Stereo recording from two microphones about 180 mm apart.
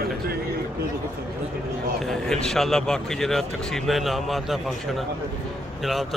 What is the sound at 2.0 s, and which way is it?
Speech, 5° left (ahead or behind).